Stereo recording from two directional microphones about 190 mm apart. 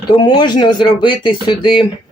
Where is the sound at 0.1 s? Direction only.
25° left (ahead or behind).